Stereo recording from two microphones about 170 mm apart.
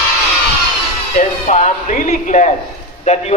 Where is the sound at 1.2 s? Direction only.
45° left (ahead or behind).